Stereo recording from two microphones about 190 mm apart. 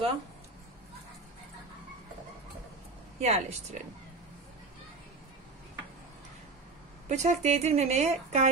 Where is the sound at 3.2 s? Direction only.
35° right (ahead or behind).